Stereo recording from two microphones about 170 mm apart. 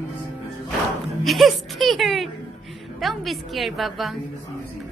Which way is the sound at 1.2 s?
Centre (ahead or behind).